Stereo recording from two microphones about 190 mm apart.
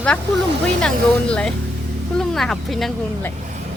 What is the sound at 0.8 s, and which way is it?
Speech, 5° left (ahead or behind).